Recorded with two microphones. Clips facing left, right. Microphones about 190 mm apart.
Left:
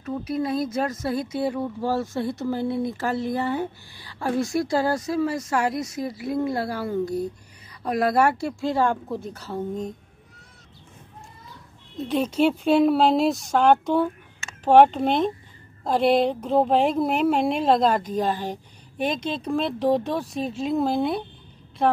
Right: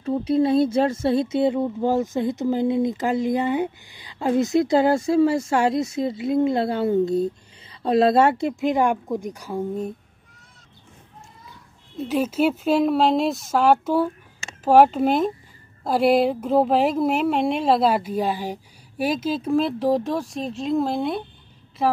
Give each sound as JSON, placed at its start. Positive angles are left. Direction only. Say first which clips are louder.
{"t": 0.0, "sound": "speech", "louder": "right 7 dB", "side_deg": -30}
{"t": 12.0, "sound": "speech", "louder": "even", "side_deg": -5}